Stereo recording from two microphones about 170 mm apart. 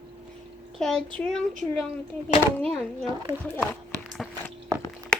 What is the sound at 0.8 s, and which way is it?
Speech, 5° left (ahead or behind).